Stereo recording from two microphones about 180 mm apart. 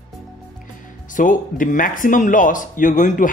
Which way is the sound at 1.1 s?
50° left (ahead or behind).